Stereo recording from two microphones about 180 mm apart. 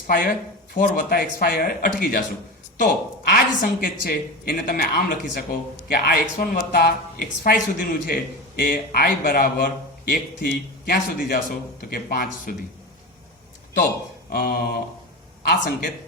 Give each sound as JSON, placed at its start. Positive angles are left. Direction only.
{"t": 0.7, "sound": "speech", "side_deg": 50}
{"t": 14.3, "sound": "a sound", "side_deg": 55}
{"t": 15.4, "sound": "speech", "side_deg": 50}